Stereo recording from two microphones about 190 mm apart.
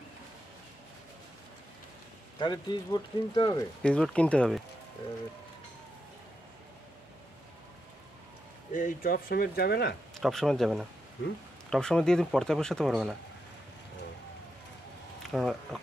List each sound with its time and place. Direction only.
2.3 s speech: 25° left (ahead or behind)
3.8 s speech: 5° left (ahead or behind)
8.7 s speech: 45° left (ahead or behind)
10.1 s speech: centre (ahead or behind)
15.2 s speech: centre (ahead or behind)